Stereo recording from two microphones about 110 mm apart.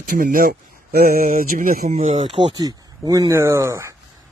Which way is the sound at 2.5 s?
30° right (ahead or behind).